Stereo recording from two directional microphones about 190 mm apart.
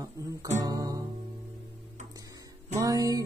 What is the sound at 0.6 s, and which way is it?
Mantra, 20° right (ahead or behind).